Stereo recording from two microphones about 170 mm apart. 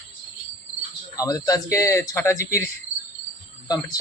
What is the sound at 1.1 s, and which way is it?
Speech, 20° left (ahead or behind).